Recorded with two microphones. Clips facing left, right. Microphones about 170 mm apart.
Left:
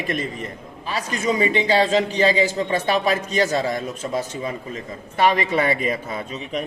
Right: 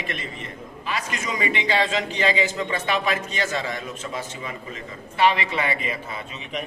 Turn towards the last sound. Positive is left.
turn(degrees=45)  # may be behind; listen again after turning